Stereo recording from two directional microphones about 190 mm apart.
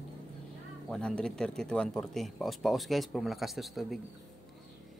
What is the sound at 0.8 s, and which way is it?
Speech, 5° left (ahead or behind).